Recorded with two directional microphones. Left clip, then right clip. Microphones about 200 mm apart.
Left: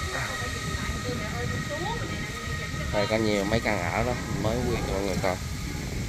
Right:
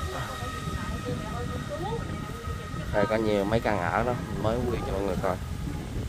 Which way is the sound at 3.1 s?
25° right (ahead or behind).